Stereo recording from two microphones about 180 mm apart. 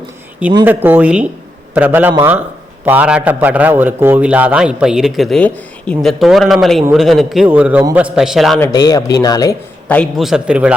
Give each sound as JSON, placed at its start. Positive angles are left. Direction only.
{"t": 0.6, "sound": "a man's voice", "side_deg": -10}
{"t": 8.7, "sound": "speech", "side_deg": 20}
{"t": 9.9, "sound": "a man's voice", "side_deg": 5}